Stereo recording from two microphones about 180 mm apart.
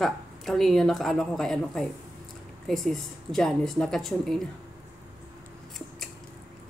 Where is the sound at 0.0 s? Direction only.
Centre (ahead or behind).